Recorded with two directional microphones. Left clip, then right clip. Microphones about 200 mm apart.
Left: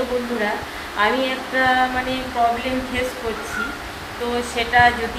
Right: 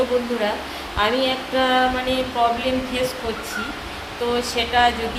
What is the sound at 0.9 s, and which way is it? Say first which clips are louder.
Female singing: left 1 dB; 20° right (ahead or behind).